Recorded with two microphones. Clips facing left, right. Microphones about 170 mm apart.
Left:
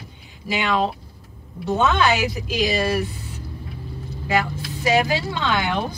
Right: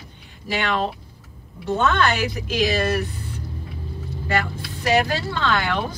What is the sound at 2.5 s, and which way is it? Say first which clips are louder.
Speech: right 1 dB; centre (ahead or behind).